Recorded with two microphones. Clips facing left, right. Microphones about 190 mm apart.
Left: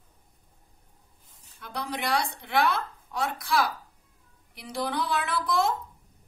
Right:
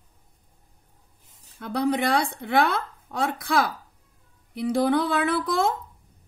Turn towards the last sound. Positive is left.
turn(degrees=-55)  # may be behind; listen again after turning